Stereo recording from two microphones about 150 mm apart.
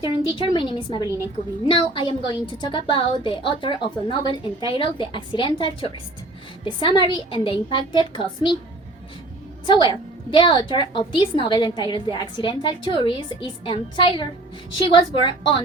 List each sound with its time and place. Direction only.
0.0 s a woman's voice: 30° right (ahead or behind)
0.5 s a woman's voice: 30° left (ahead or behind)
1.0 s a woman's voice: 20° right (ahead or behind)
1.6 s a woman's voice: 35° left (ahead or behind)
9.6 s a woman's voice: 30° left (ahead or behind)